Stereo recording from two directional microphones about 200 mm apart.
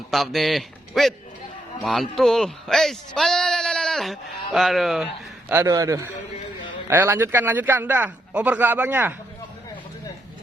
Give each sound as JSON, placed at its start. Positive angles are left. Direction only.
{"t": 0.1, "sound": "a man's voice", "side_deg": 0}
{"t": 5.5, "sound": "a man's voice", "side_deg": -15}